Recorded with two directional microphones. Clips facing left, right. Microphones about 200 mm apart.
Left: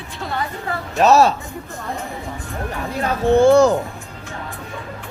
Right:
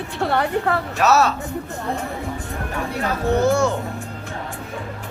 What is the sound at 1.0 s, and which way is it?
Speech, 35° left (ahead or behind).